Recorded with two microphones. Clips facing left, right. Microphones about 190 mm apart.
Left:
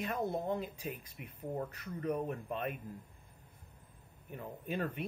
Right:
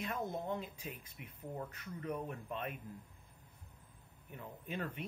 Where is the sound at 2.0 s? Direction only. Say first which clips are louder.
Left 6 dB; 40° left (ahead or behind).